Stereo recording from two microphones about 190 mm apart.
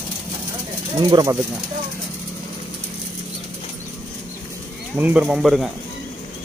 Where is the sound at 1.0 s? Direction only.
20° right (ahead or behind).